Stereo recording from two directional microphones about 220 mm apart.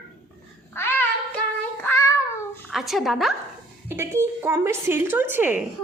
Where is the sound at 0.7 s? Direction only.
10° left (ahead or behind).